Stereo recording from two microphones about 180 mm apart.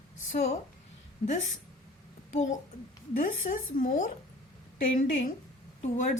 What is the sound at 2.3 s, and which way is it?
A woman's voice, 40° left (ahead or behind).